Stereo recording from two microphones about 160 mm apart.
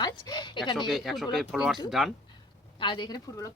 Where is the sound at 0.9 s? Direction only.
Centre (ahead or behind).